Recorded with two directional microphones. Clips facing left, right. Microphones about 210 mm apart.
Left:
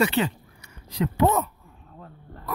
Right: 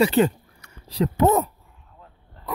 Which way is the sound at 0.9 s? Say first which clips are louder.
Right 3 dB; 40° right (ahead or behind).